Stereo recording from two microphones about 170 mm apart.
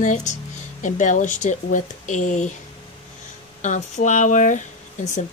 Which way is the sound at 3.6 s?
45° left (ahead or behind).